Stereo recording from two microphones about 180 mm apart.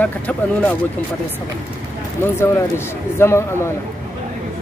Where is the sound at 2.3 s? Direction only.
15° left (ahead or behind).